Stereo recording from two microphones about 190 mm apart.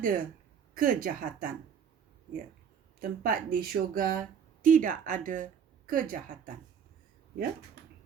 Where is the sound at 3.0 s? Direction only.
45° right (ahead or behind).